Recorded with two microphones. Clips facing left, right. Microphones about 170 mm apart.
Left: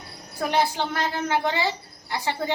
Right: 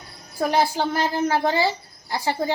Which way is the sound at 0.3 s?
30° right (ahead or behind).